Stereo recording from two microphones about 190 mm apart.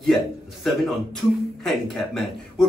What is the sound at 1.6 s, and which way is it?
Speech, centre (ahead or behind).